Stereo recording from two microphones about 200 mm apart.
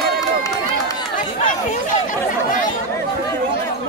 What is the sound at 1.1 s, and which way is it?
Chatter, 40° left (ahead or behind).